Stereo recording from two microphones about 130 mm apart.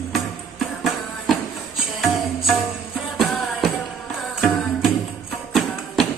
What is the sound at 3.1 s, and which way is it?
Music, centre (ahead or behind).